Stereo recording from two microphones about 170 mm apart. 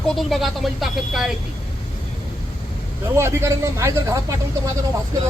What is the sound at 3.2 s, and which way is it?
Speech, 15° right (ahead or behind).